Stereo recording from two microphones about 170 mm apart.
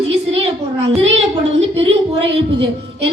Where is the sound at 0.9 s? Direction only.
35° right (ahead or behind).